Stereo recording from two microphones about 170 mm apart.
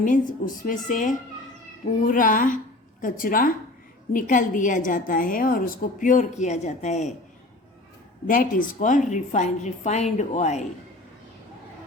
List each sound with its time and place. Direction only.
0.0 s a woman's voice: 50° left (ahead or behind)
8.3 s a woman's voice: 55° left (ahead or behind)